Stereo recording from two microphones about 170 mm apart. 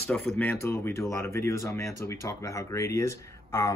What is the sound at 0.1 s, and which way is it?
Speech, 5° left (ahead or behind).